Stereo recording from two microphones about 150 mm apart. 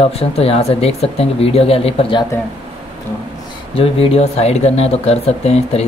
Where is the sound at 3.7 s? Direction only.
40° left (ahead or behind).